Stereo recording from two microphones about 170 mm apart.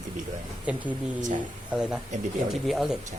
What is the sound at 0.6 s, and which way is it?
Speech, 10° right (ahead or behind).